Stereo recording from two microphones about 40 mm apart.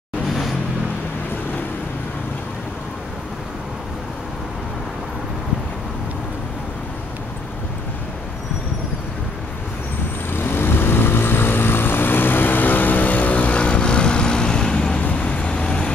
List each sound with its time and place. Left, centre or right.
10.3 s vehicle: left
15.0 s vehicle: left